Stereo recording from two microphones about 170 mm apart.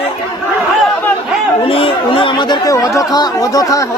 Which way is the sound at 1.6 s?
35° left (ahead or behind).